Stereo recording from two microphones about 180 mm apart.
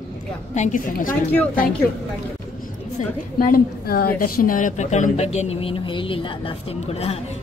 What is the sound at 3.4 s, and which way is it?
A woman's voice, 55° left (ahead or behind).